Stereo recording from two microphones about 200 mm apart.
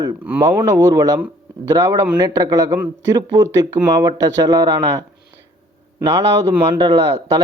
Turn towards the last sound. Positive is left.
turn(degrees=-20)  # may be behind; listen again after turning